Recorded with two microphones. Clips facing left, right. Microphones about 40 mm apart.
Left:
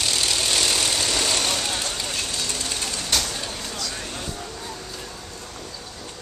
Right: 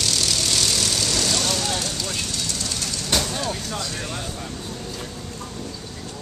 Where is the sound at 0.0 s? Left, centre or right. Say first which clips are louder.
Even; centre.